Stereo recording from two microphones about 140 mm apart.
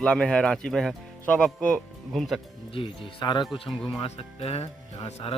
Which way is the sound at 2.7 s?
40° left (ahead or behind).